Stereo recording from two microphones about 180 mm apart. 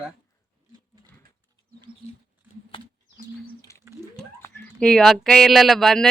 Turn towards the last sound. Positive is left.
turn(degrees=0)  # may be behind; listen again after turning